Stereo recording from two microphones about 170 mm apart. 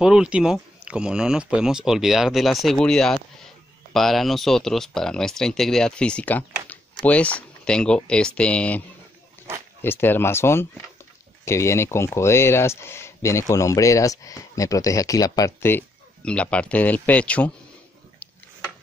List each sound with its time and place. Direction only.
0.0 s speech: 5° right (ahead or behind)